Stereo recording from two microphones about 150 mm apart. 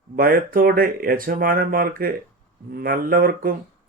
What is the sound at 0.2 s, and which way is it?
Speech, 80° right.